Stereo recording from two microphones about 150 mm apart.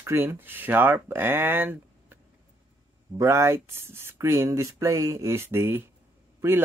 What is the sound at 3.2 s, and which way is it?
Speech, 20° right (ahead or behind).